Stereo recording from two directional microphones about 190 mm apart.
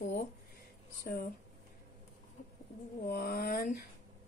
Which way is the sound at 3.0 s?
55° left (ahead or behind).